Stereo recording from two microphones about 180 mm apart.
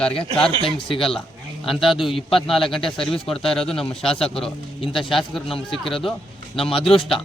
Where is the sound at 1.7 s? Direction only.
Centre (ahead or behind).